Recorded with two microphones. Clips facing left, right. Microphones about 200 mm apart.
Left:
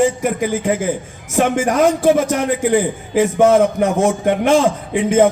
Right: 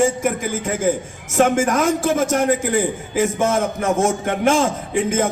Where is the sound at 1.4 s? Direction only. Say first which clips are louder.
Left 2 dB; 45° right (ahead or behind).